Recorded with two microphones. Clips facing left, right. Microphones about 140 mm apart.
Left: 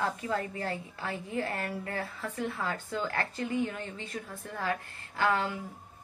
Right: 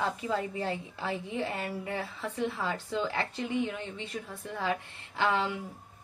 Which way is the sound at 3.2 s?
20° right (ahead or behind).